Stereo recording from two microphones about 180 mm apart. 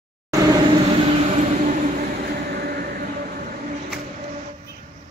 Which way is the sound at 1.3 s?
45° right (ahead or behind).